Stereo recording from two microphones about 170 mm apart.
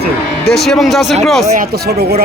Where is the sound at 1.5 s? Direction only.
60° right (ahead or behind).